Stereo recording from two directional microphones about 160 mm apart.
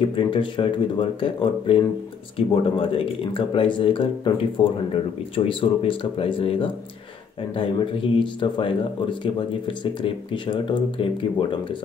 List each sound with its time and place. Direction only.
0.0 s speech: 30° left (ahead or behind)